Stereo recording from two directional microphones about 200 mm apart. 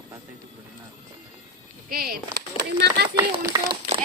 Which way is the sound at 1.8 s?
50° right (ahead or behind).